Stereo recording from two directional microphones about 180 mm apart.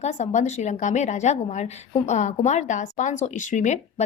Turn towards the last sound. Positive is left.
turn(degrees=40)  # may be behind; listen again after turning